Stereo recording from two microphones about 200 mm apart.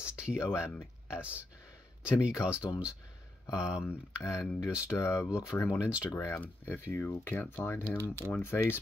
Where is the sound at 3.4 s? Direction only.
15° left (ahead or behind).